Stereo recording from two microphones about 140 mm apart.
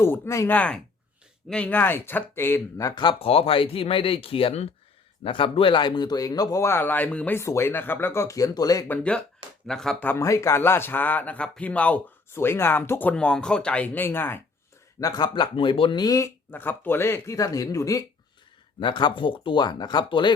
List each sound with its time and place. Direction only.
0.0 s speech: 20° left (ahead or behind)
3.0 s speech: 40° left (ahead or behind)
8.9 s speech: 5° left (ahead or behind)
10.1 s speech: 20° left (ahead or behind)
15.0 s speech: 30° left (ahead or behind)
16.5 s speech: 15° left (ahead or behind); by 20.3 s 35° left (ahead or behind)